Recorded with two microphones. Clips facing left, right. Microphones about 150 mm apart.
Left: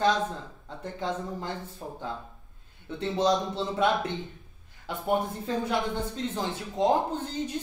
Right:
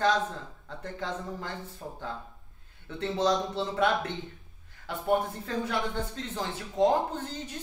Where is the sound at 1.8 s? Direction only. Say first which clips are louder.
Left 2 dB; 25° left (ahead or behind).